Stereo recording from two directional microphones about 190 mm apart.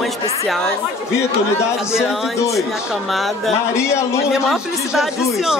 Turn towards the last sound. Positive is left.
turn(degrees=0)  # may be behind; listen again after turning